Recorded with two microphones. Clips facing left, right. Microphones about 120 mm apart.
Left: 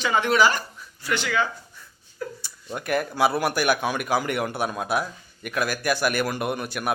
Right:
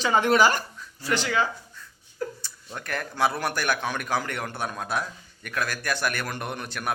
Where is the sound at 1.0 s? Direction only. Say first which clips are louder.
Even; 35° right (ahead or behind).